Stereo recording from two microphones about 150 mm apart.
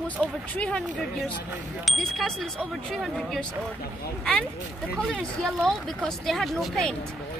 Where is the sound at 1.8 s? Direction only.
Centre (ahead or behind).